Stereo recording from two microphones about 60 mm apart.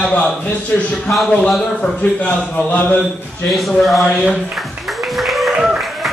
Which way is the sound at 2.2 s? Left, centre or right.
Left.